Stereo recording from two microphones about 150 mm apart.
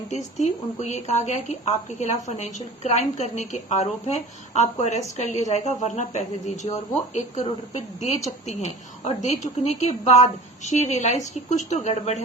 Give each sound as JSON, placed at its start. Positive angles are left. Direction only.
{"t": 0.1, "sound": "speech", "side_deg": 50}